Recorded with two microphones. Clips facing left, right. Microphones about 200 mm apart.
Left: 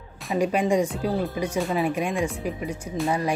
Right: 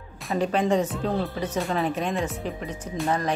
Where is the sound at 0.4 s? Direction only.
10° left (ahead or behind).